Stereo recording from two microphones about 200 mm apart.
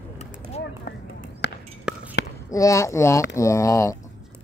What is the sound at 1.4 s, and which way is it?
Ping, 60° left (ahead or behind).